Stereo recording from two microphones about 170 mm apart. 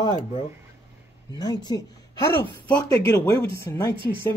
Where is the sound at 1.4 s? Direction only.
25° left (ahead or behind).